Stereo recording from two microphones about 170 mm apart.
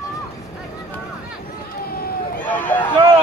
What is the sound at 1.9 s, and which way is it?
Run, 60° left (ahead or behind).